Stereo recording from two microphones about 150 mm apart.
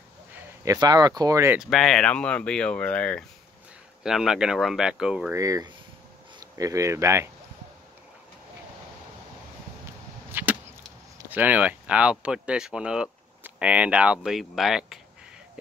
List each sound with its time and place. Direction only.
0.7 s speech: 25° right (ahead or behind)
1.6 s speech: centre (ahead or behind)
4.0 s speech: 5° right (ahead or behind)
5.3 s speech: 20° right (ahead or behind)
10.3 s arrow: 10° right (ahead or behind)
11.2 s speech: 10° right (ahead or behind)